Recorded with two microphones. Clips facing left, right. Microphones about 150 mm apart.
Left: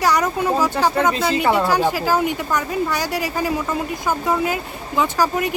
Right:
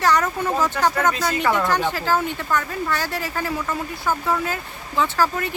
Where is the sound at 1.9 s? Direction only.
10° left (ahead or behind).